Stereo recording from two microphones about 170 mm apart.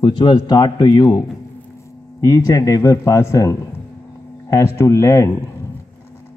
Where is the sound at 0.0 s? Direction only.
30° left (ahead or behind).